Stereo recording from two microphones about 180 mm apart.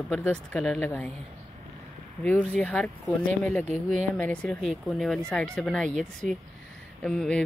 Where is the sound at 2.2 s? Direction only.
5° left (ahead or behind).